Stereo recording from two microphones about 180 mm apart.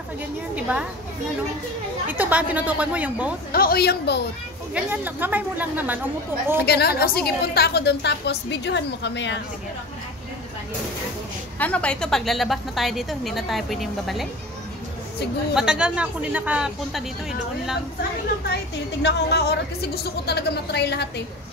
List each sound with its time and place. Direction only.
0.6 s a woman's voice: 5° right (ahead or behind)
2.0 s a woman's voice: 10° right (ahead or behind)
3.5 s a woman's voice: 55° left (ahead or behind)
4.7 s a woman's voice: 10° right (ahead or behind)
6.6 s a woman's voice: 65° left (ahead or behind)
11.5 s a woman's voice: 5° left (ahead or behind)
15.5 s a woman's voice: 5° right (ahead or behind)
19.0 s a woman's voice: 70° left (ahead or behind)